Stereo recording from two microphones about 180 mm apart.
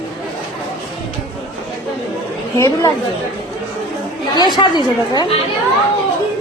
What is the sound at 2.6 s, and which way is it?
Speech, 20° left (ahead or behind).